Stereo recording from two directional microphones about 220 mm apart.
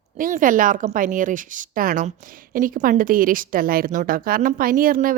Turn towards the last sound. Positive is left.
turn(degrees=-40)  # may be behind; listen again after turning